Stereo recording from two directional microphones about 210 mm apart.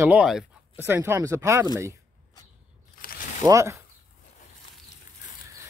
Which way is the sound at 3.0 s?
40° left (ahead or behind).